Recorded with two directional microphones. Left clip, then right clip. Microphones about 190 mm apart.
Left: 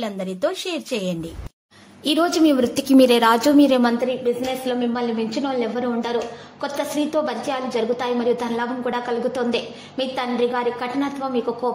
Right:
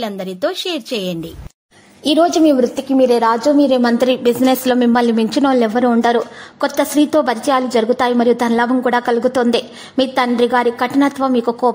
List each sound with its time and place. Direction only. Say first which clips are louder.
0.0 s a woman's voice: right 4 dB; 30° right (ahead or behind)
2.0 s a woman's voice: right 6 dB; 15° right (ahead or behind)
2.6 s a woman's voice: right 2 dB; 15° left (ahead or behind)
3.5 s a woman's voice: right 3 dB; 5° right (ahead or behind)
4.0 s a woman's voice: right 8 dB; 45° right (ahead or behind)